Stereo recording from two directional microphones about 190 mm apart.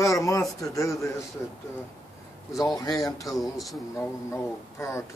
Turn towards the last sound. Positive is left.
turn(degrees=15)  # may be behind; listen again after turning